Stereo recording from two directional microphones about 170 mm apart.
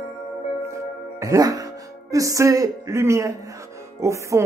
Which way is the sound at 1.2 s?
20° right (ahead or behind).